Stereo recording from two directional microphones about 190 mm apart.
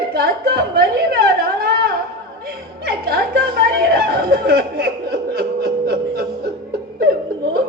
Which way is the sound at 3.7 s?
55° right (ahead or behind).